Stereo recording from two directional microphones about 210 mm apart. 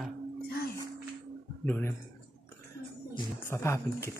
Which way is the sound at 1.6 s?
10° left (ahead or behind).